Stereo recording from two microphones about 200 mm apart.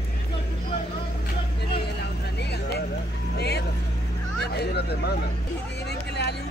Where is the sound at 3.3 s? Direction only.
55° left (ahead or behind).